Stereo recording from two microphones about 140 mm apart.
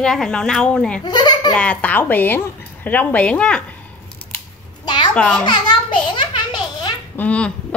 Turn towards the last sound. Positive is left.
turn(degrees=10)  # may be behind; listen again after turning